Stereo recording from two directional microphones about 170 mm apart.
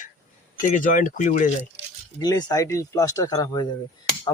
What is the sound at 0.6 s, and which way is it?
Speech, 50° left (ahead or behind).